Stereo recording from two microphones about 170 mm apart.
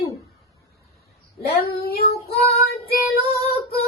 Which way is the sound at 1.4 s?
65° left (ahead or behind).